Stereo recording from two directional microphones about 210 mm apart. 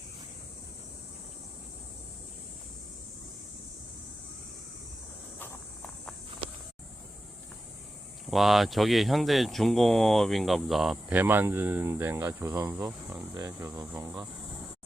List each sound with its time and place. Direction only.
5.4 s cricket: 5° left (ahead or behind)
8.3 s speech: centre (ahead or behind)
13.3 s speech: 20° right (ahead or behind)